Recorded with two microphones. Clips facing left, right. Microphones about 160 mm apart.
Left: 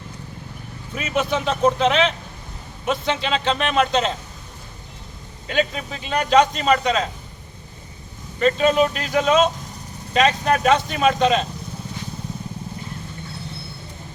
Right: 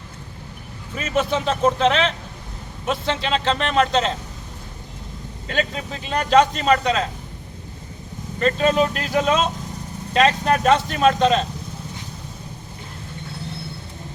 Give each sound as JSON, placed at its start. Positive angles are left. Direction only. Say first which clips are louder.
{"t": 0.9, "sound": "speech", "louder": "right 1 dB", "side_deg": 5}
{"t": 6.1, "sound": "speech", "louder": "even", "side_deg": 0}
{"t": 8.4, "sound": "speech", "louder": "left 1 dB", "side_deg": 5}